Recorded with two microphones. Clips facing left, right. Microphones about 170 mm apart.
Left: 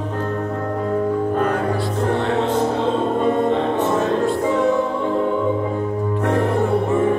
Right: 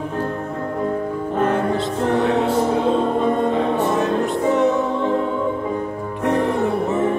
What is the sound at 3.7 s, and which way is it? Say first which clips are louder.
Music: even; 20° right (ahead or behind).